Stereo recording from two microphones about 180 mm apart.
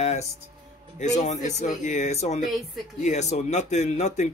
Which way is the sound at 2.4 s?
Centre (ahead or behind).